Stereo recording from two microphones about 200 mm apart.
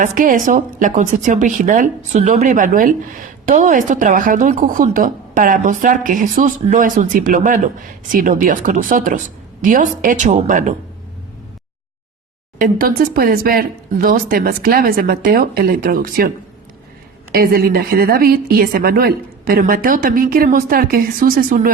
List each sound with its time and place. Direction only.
0.0 s speech: 40° right (ahead or behind)
12.5 s a woman's voice: 45° right (ahead or behind)
17.3 s a woman's voice: 50° right (ahead or behind)